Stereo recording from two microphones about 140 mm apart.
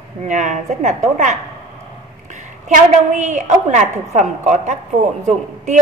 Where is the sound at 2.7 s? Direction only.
60° right (ahead or behind).